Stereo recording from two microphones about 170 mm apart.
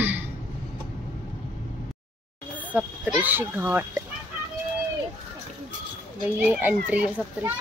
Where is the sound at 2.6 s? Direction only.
5° right (ahead or behind).